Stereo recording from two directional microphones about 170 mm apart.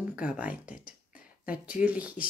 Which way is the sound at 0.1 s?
5° right (ahead or behind).